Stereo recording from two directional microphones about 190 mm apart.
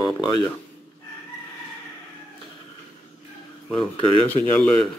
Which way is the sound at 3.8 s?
25° left (ahead or behind).